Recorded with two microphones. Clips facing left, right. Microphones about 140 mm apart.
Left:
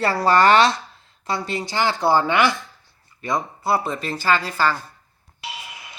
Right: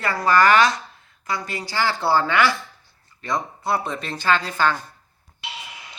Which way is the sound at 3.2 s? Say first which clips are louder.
Left 2 dB; 5° left (ahead or behind).